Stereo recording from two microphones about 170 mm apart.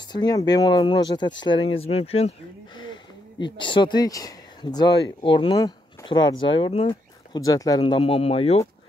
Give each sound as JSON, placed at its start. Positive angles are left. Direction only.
{"t": 0.1, "sound": "speech", "side_deg": 25}
{"t": 2.8, "sound": "a sound", "side_deg": 25}
{"t": 5.2, "sound": "speech", "side_deg": 30}
{"t": 6.9, "sound": "speech", "side_deg": 20}